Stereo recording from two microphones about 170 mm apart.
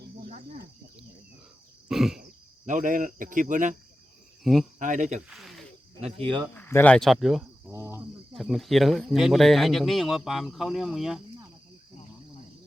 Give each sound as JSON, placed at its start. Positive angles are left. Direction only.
{"t": 0.0, "sound": "cricket", "side_deg": -65}
{"t": 1.9, "sound": "speech", "side_deg": 0}
{"t": 2.6, "sound": "speech", "side_deg": -50}
{"t": 4.4, "sound": "speech", "side_deg": 0}
{"t": 4.8, "sound": "speech", "side_deg": -45}
{"t": 5.3, "sound": "snake", "side_deg": 0}
{"t": 6.0, "sound": "speech", "side_deg": -35}
{"t": 6.5, "sound": "speech", "side_deg": 15}
{"t": 7.7, "sound": "cricket", "side_deg": -15}
{"t": 8.3, "sound": "speech", "side_deg": 0}